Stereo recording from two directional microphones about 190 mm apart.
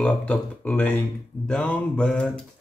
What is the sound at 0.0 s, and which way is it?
Speech, 5° left (ahead or behind).